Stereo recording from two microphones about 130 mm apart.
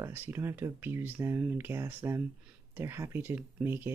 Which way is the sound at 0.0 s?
15° right (ahead or behind).